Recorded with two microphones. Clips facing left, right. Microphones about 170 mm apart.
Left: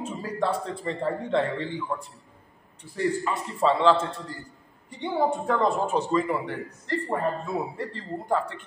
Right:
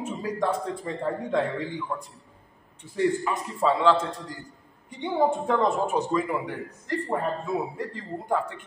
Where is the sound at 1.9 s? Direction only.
Centre (ahead or behind).